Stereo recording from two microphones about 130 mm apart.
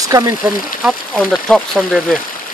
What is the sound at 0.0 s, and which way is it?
Speech, 25° right (ahead or behind).